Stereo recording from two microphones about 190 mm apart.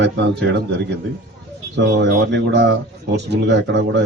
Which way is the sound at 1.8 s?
65° right (ahead or behind).